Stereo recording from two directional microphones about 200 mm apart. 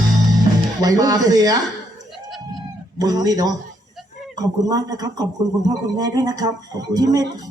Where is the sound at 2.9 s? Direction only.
20° right (ahead or behind).